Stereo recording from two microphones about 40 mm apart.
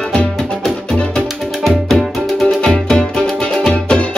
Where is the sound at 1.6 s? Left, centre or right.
Centre.